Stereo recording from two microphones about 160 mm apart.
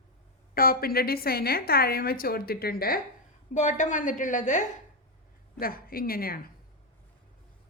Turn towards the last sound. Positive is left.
turn(degrees=65)  # may be behind; listen again after turning